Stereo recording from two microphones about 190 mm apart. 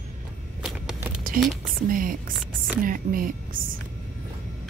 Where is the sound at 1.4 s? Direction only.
50° right (ahead or behind).